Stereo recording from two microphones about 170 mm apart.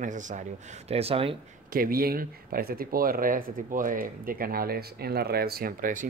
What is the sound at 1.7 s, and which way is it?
Speech, 60° right (ahead or behind).